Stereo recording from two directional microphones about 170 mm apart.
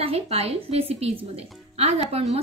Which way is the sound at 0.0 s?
35° right (ahead or behind).